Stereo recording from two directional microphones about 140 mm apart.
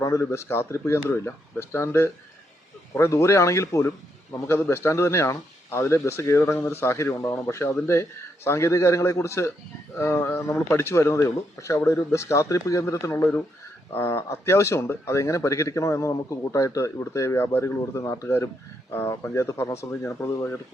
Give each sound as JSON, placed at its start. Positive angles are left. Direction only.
{"t": 0.0, "sound": "a man's voice", "side_deg": 20}